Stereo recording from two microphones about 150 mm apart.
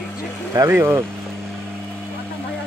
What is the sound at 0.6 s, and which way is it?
Speech, 15° right (ahead or behind).